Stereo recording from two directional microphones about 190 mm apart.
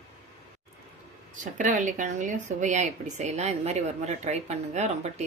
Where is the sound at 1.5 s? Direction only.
40° right (ahead or behind).